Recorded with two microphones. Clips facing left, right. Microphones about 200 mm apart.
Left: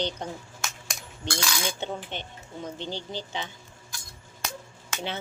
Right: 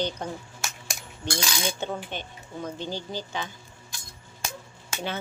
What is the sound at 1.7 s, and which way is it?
Speech, 20° left (ahead or behind).